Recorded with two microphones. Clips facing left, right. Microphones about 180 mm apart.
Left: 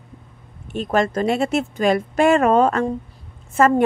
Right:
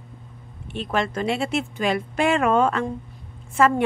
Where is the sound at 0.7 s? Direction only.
45° left (ahead or behind).